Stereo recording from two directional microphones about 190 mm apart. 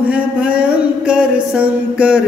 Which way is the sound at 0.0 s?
5° right (ahead or behind).